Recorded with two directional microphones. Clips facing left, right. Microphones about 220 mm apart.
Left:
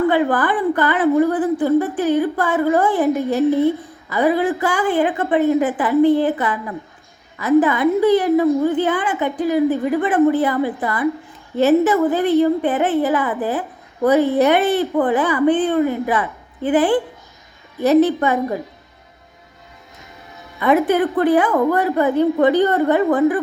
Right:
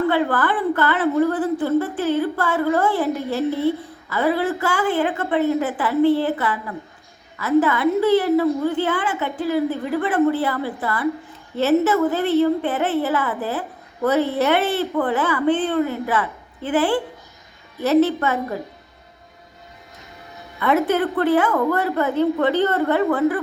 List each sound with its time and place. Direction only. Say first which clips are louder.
0.1 s a woman's voice: left 3 dB; 15° left (ahead or behind)
20.6 s a woman's voice: left 3 dB; 15° left (ahead or behind)